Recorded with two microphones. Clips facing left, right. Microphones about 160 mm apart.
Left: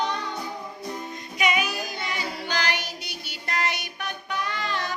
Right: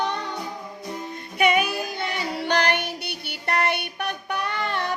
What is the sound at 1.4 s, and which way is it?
Child singing, 55° right (ahead or behind).